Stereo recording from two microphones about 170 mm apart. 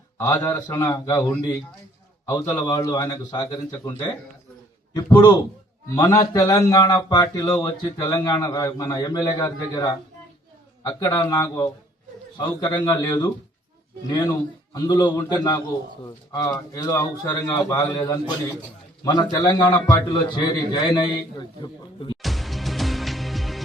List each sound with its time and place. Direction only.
0.2 s a man's voice: 15° left (ahead or behind)
5.1 s a man's voice: 25° left (ahead or behind)
22.2 s music: centre (ahead or behind)